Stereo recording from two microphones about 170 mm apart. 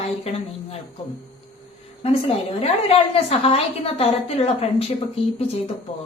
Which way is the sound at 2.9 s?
35° left (ahead or behind).